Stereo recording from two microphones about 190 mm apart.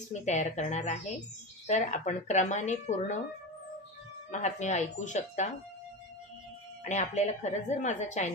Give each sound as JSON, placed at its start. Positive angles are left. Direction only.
{"t": 0.1, "sound": "a woman's voice", "side_deg": 40}
{"t": 4.3, "sound": "a woman's voice", "side_deg": 40}
{"t": 6.8, "sound": "a woman's voice", "side_deg": 40}